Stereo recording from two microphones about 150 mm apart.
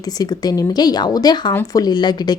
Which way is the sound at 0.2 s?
25° left (ahead or behind).